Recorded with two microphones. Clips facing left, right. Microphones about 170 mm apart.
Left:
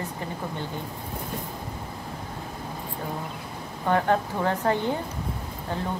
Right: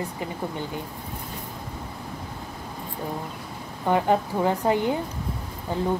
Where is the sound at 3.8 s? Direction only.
15° right (ahead or behind).